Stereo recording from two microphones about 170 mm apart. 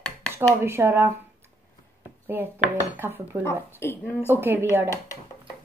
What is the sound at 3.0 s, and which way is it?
Speech, 10° right (ahead or behind).